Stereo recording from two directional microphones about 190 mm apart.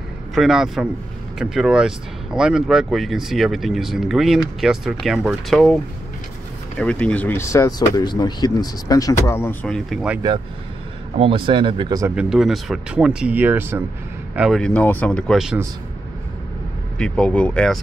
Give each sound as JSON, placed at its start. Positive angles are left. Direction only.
{"t": 0.3, "sound": "speech", "side_deg": 0}
{"t": 6.8, "sound": "speech", "side_deg": 5}
{"t": 11.1, "sound": "speech", "side_deg": -30}
{"t": 12.2, "sound": "speech", "side_deg": 0}
{"t": 17.0, "sound": "speech", "side_deg": 5}